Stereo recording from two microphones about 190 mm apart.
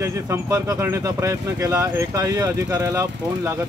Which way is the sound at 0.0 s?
15° right (ahead or behind).